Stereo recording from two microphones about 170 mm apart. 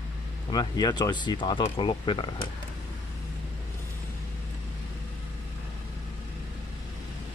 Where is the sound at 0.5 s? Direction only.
25° left (ahead or behind).